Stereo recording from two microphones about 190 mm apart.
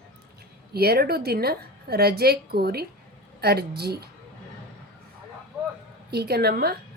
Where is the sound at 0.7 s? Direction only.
55° right (ahead or behind).